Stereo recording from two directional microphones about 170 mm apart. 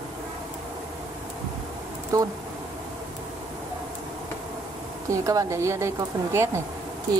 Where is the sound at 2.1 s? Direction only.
20° right (ahead or behind).